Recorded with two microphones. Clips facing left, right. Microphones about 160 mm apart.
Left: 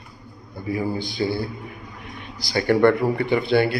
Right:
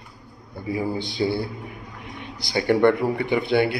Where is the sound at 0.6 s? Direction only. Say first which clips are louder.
Left 1 dB; 20° right (ahead or behind).